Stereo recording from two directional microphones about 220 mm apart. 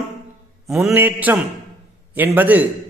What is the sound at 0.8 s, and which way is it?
A man's voice, 10° right (ahead or behind).